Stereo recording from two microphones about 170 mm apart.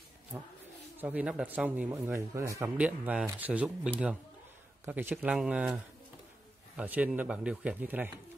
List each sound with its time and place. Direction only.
0.9 s speech: 10° right (ahead or behind)
2.8 s speech: 5° right (ahead or behind)
6.8 s speech: 10° right (ahead or behind)